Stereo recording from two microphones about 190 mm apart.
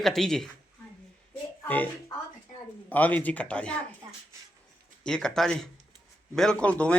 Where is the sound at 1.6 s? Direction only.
10° left (ahead or behind).